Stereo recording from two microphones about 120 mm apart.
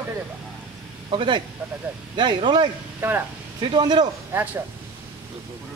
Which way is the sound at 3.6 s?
40° right (ahead or behind).